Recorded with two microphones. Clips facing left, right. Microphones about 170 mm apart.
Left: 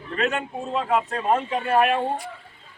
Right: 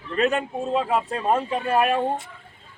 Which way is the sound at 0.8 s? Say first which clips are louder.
Even; 10° right (ahead or behind).